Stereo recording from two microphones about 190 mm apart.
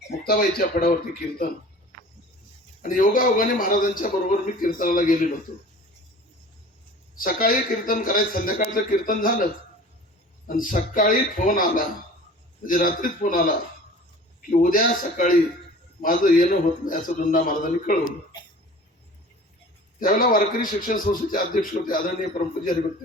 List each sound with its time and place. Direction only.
0.3 s a man's voice: 55° left (ahead or behind)
2.8 s a man's voice: 45° left (ahead or behind)
7.2 s a man's voice: 45° left (ahead or behind)
14.5 s a man's voice: 45° left (ahead or behind)
20.0 s a man's voice: 50° left (ahead or behind)